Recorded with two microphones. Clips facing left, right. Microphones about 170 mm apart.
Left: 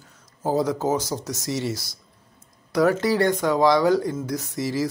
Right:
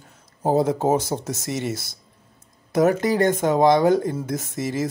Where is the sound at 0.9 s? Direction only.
55° right (ahead or behind).